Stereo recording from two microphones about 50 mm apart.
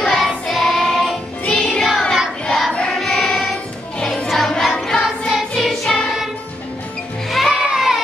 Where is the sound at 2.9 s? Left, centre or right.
Centre.